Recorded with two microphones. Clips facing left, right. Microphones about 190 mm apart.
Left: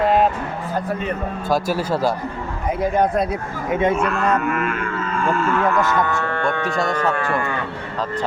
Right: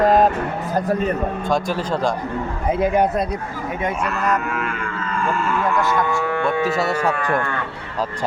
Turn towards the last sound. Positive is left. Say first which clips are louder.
# even
turn(degrees=-10)  # may be behind; listen again after turning